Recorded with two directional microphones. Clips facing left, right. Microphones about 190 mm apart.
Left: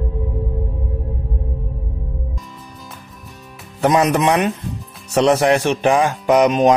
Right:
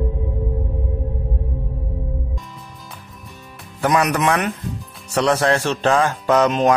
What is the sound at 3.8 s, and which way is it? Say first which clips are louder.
Speech: left 3 dB; 25° left (ahead or behind).